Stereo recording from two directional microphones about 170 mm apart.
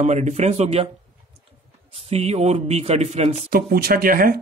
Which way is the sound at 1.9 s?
35° right (ahead or behind).